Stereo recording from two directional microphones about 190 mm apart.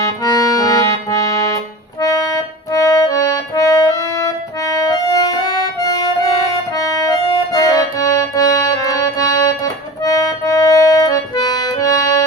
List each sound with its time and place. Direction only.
0.3 s accordion: 20° left (ahead or behind)
4.7 s music: 20° left (ahead or behind)
5.4 s accordion: 20° left (ahead or behind)